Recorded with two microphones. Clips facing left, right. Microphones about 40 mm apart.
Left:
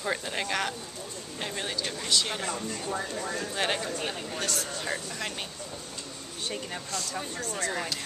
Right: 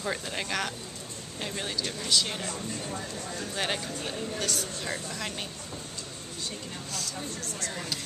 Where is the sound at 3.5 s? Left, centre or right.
Centre.